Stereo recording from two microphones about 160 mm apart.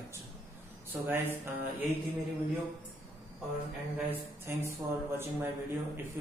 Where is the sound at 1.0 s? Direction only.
15° right (ahead or behind).